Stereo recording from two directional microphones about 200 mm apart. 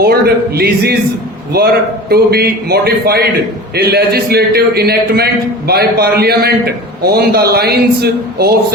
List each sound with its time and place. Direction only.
0.0 s a man's voice: 50° right (ahead or behind)